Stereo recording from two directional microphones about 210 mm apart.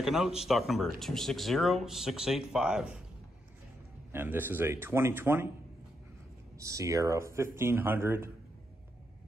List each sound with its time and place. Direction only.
0.0 s speech: centre (ahead or behind)
4.1 s speech: 10° right (ahead or behind)
6.6 s speech: 15° right (ahead or behind)